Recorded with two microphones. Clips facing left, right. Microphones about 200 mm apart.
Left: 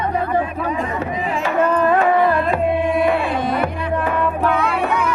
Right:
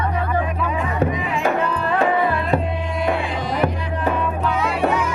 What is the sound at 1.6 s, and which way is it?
Music, 50° left (ahead or behind).